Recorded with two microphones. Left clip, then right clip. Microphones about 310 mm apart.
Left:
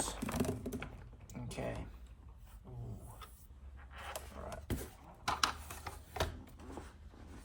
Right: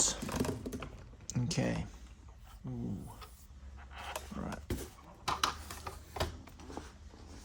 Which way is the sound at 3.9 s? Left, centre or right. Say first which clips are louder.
Right 4 dB; centre.